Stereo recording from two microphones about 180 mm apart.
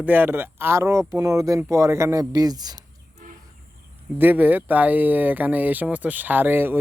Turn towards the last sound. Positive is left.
turn(degrees=-10)  # may be behind; listen again after turning